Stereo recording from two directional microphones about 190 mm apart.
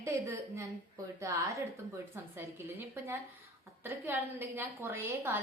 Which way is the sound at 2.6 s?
10° right (ahead or behind).